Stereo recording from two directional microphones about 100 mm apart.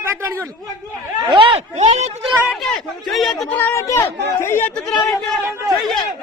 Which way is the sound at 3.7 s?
30° left (ahead or behind).